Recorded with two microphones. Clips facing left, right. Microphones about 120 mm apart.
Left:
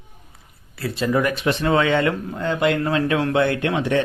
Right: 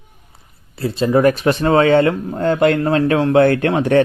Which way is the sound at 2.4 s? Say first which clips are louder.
Right 6 dB; 45° right (ahead or behind).